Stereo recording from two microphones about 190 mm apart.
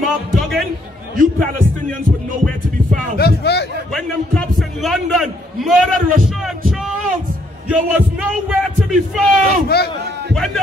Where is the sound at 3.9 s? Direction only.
5° left (ahead or behind).